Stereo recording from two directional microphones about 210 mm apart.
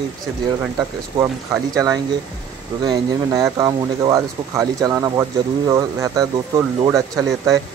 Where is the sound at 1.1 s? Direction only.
15° right (ahead or behind).